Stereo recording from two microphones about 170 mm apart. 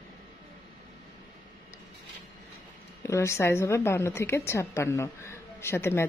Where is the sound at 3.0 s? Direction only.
15° left (ahead or behind).